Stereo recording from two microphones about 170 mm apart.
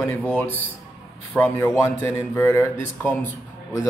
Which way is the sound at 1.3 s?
10° left (ahead or behind).